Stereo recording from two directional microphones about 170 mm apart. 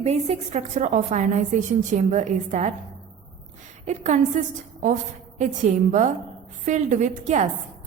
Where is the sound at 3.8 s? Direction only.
45° right (ahead or behind).